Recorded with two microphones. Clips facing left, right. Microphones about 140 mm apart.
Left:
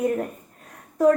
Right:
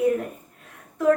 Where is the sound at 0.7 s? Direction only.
40° left (ahead or behind).